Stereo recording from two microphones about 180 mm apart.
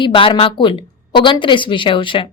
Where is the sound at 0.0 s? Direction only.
30° left (ahead or behind).